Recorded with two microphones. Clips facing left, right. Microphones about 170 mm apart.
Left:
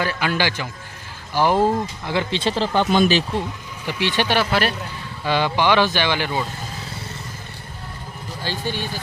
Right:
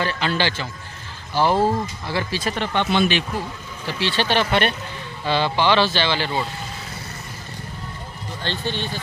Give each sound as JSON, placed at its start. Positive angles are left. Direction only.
{"t": 0.0, "sound": "speech", "side_deg": 10}
{"t": 3.3, "sound": "speech", "side_deg": 15}
{"t": 8.4, "sound": "speech", "side_deg": 10}